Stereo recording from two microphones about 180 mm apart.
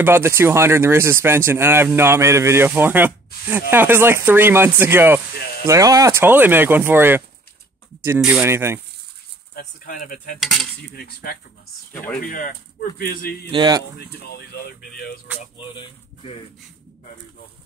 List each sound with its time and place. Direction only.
0.0 s speech: 15° right (ahead or behind)
9.5 s cutlery: 55° left (ahead or behind)
10.9 s speech: 60° left (ahead or behind)
12.2 s cutlery: 50° left (ahead or behind)
13.0 s speech: 55° left (ahead or behind)
13.5 s speech: 20° right (ahead or behind)
13.9 s speech: 60° left (ahead or behind)
15.5 s speech: 30° left (ahead or behind)